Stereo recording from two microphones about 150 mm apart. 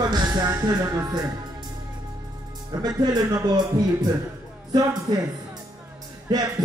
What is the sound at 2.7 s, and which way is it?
Speech, 25° right (ahead or behind).